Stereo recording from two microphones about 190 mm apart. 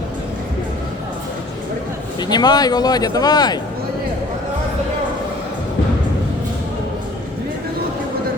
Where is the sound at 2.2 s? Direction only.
20° left (ahead or behind).